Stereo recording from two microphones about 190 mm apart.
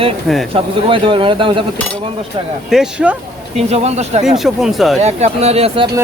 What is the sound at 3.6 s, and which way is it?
Speech, 35° right (ahead or behind).